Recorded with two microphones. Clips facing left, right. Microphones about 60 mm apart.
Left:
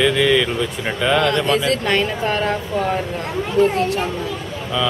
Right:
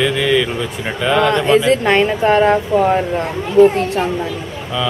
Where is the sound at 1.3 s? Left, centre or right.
Centre.